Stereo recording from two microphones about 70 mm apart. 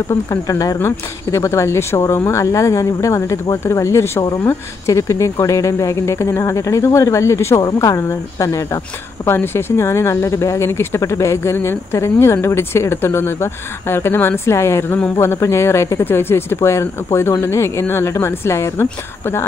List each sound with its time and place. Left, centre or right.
0.1 s speech: left
0.7 s speech: left
9.2 s speech: left